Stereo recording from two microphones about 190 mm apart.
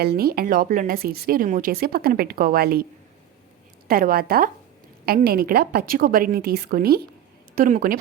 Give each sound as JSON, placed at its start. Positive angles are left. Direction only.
{"t": 0.0, "sound": "speech", "side_deg": -55}
{"t": 3.8, "sound": "speech", "side_deg": -50}